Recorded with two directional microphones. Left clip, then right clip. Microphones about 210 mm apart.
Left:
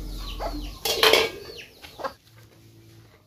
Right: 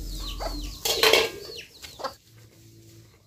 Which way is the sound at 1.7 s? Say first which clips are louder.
Left 2 dB; 45° right (ahead or behind).